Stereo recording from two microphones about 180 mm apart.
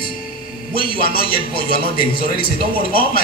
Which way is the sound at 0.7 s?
55° left (ahead or behind).